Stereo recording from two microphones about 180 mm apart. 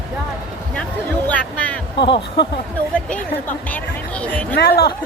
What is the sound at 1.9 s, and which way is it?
Speech, 25° left (ahead or behind).